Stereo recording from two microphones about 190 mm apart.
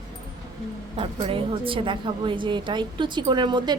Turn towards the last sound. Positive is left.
turn(degrees=-25)  # may be behind; listen again after turning